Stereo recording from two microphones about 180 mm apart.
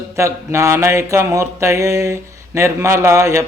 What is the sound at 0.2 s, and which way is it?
Speech, 15° right (ahead or behind).